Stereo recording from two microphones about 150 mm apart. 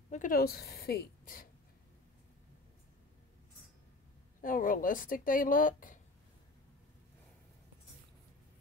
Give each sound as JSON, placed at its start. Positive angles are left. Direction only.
{"t": 0.1, "sound": "a woman's voice", "side_deg": 65}
{"t": 4.4, "sound": "speech", "side_deg": 65}